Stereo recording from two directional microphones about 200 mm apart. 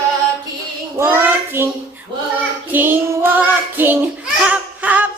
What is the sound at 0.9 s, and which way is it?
Child singing, 10° right (ahead or behind).